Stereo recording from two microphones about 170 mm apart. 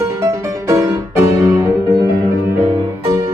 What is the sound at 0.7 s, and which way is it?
Music, 15° right (ahead or behind).